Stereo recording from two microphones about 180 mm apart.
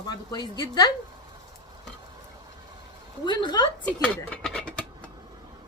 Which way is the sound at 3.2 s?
25° left (ahead or behind).